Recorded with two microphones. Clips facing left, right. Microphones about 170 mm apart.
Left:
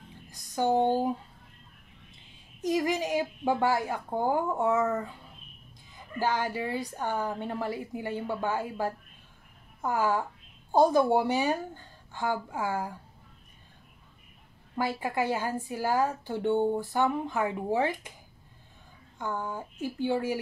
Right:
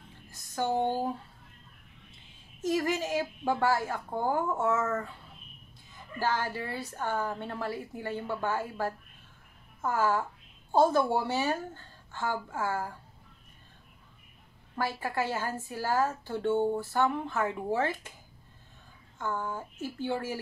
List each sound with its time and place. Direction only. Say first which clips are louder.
0.3 s speech: left 4 dB; 15° left (ahead or behind)
2.6 s a woman's voice: left 1 dB; 15° left (ahead or behind)
14.8 s a woman's voice: left 2 dB; 15° left (ahead or behind)
19.1 s a woman's voice: even; 15° left (ahead or behind)